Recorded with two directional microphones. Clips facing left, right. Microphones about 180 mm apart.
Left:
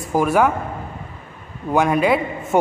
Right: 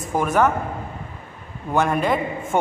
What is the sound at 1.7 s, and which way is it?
Speech, 10° left (ahead or behind).